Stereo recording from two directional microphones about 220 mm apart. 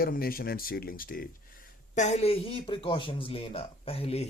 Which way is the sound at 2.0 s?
30° left (ahead or behind).